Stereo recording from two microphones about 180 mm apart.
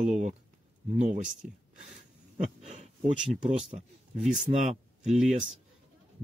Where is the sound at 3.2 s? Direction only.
5° right (ahead or behind).